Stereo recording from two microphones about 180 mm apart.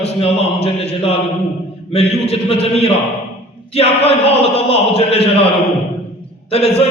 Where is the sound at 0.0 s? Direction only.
35° left (ahead or behind).